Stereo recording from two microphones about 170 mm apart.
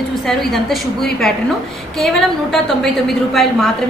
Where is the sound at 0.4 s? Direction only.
Centre (ahead or behind).